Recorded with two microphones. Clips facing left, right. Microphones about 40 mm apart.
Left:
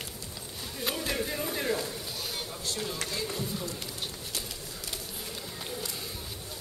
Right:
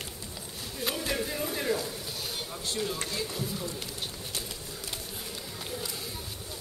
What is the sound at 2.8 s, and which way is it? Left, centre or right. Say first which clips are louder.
Speech: right 2 dB; centre.